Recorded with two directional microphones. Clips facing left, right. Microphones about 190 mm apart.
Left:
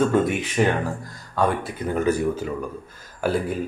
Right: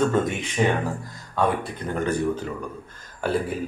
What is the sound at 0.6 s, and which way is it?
Speech, centre (ahead or behind).